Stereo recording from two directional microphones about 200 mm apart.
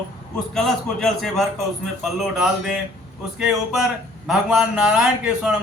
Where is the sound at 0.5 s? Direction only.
Centre (ahead or behind).